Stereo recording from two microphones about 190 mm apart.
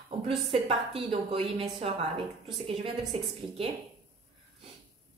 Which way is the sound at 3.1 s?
30° right (ahead or behind).